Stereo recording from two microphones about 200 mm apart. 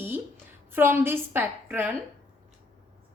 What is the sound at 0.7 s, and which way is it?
A woman's voice, 10° right (ahead or behind).